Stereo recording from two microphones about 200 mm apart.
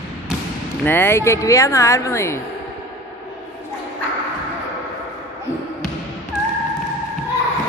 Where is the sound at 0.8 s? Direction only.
10° left (ahead or behind).